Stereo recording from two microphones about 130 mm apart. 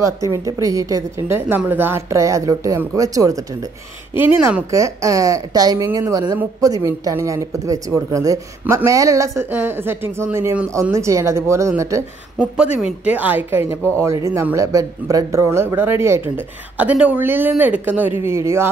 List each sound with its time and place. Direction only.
0.0 s speech: 25° right (ahead or behind)
4.2 s speech: 15° right (ahead or behind)
12.8 s speech: 10° right (ahead or behind)